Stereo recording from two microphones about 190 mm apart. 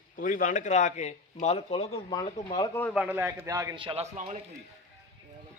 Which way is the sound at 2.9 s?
5° right (ahead or behind).